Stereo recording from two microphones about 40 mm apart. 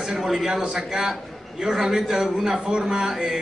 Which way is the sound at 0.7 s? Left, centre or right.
Right.